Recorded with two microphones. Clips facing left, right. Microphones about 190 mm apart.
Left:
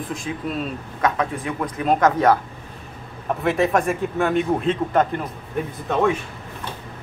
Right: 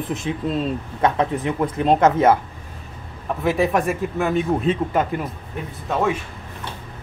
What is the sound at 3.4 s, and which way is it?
A man's voice, centre (ahead or behind).